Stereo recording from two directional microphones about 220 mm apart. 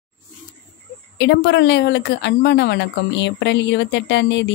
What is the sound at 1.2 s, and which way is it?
Speech, 50° left (ahead or behind).